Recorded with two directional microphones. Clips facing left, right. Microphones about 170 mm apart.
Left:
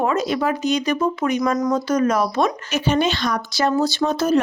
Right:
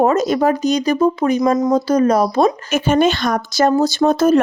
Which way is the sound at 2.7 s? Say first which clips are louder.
Right 5 dB; 50° right (ahead or behind).